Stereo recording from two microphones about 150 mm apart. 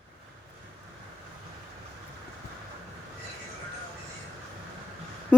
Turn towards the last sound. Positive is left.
turn(degrees=10)  # may be behind; listen again after turning